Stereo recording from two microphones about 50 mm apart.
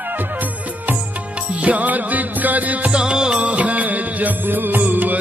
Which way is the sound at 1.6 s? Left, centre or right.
Right.